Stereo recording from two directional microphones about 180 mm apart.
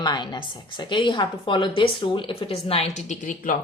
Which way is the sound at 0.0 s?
25° left (ahead or behind).